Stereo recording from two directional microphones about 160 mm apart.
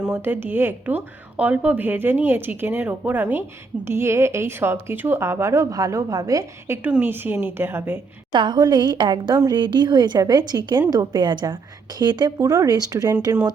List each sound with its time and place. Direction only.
0.0 s a woman's voice: 10° right (ahead or behind)
8.3 s a woman's voice: 30° right (ahead or behind)